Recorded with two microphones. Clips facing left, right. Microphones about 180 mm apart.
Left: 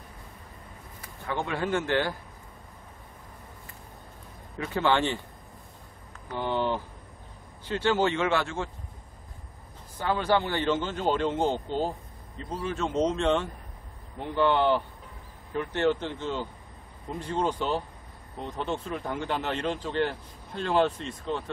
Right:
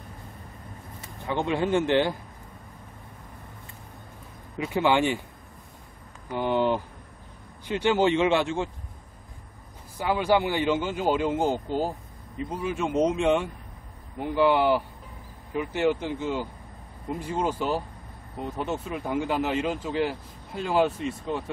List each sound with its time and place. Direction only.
1.0 s speech: 20° right (ahead or behind)
4.6 s speech: 15° right (ahead or behind)
6.3 s speech: 15° right (ahead or behind)
9.9 s speech: 10° right (ahead or behind)